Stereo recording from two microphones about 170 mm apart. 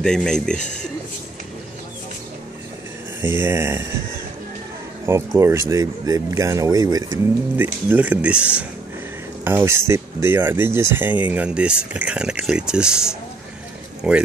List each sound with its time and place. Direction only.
0.0 s speech: 5° left (ahead or behind)
3.2 s speech: 15° right (ahead or behind)
5.0 s speech: 15° right (ahead or behind)
7.5 s speech: 10° right (ahead or behind)
14.0 s speech: 5° right (ahead or behind)